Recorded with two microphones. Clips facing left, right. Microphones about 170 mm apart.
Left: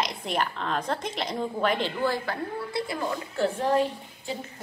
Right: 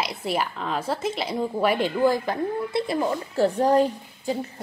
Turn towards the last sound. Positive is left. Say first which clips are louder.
# right 5 dB
turn(degrees=-40)  # may be behind; listen again after turning